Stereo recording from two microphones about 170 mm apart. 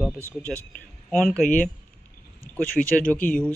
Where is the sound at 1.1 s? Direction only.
5° left (ahead or behind).